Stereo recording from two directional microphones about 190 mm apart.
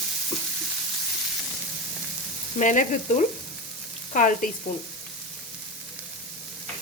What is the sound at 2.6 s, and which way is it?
Frying, 40° left (ahead or behind).